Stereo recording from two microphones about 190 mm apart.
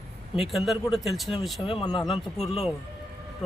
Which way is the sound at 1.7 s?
25° left (ahead or behind).